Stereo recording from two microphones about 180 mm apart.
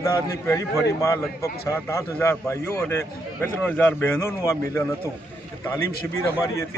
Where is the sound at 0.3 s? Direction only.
20° left (ahead or behind).